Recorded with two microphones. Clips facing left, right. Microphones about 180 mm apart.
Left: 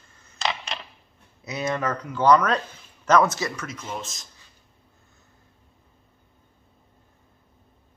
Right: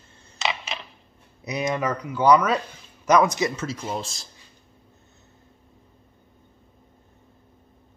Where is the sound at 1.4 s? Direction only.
15° right (ahead or behind); by 4.3 s 30° right (ahead or behind).